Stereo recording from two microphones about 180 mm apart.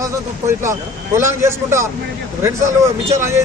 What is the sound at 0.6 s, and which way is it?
Speech, 15° right (ahead or behind).